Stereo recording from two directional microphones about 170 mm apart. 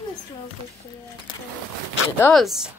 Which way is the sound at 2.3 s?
Centre (ahead or behind).